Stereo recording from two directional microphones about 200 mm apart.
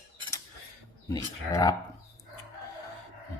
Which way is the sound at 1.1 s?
20° left (ahead or behind).